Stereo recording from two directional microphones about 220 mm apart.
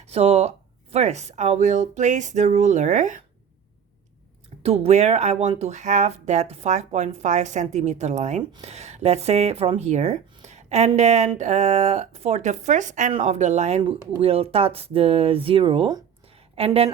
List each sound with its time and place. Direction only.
0.0 s speech: 25° right (ahead or behind)
4.6 s speech: 25° right (ahead or behind)